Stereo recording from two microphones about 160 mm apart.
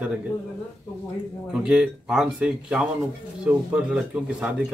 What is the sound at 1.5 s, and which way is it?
Speech, 5° right (ahead or behind).